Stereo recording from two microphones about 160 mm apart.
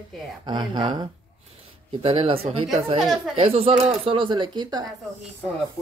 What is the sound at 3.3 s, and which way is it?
Speech, 40° right (ahead or behind).